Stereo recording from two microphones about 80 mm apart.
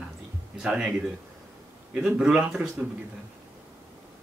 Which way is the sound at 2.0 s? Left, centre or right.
Centre.